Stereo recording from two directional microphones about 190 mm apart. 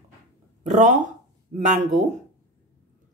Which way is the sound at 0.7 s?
40° right (ahead or behind).